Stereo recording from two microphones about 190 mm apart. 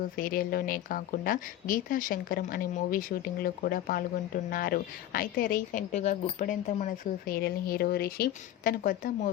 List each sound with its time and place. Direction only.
0.2 s a woman's voice: 50° left (ahead or behind)